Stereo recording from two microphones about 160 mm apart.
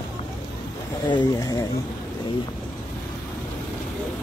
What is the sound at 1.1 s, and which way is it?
Speech, 25° left (ahead or behind).